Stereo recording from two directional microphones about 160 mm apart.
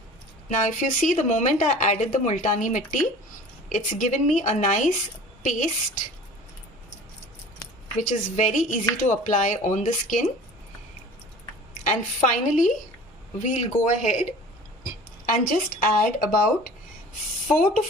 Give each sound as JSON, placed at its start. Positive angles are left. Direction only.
{"t": 0.4, "sound": "speech", "side_deg": 55}
{"t": 7.9, "sound": "speech", "side_deg": 50}
{"t": 11.9, "sound": "speech", "side_deg": 50}
{"t": 15.3, "sound": "speech", "side_deg": 60}